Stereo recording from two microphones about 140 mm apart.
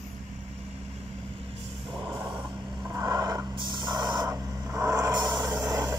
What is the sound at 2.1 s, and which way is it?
Vehicle, 15° right (ahead or behind).